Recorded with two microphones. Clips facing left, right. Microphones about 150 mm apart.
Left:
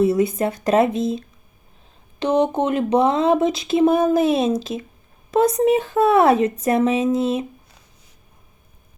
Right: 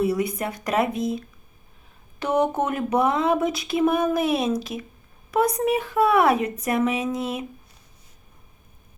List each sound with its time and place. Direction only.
0.0 s speech: 25° left (ahead or behind)